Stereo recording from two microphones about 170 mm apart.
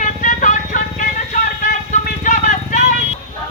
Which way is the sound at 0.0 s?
50° left (ahead or behind).